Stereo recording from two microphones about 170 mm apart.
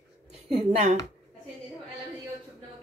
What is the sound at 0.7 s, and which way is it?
Speech, 40° right (ahead or behind).